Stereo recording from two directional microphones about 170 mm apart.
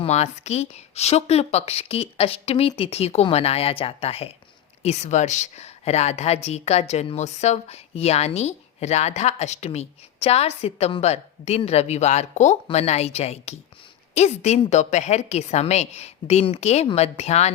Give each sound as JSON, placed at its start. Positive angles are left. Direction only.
{"t": 0.0, "sound": "a woman's voice", "side_deg": 40}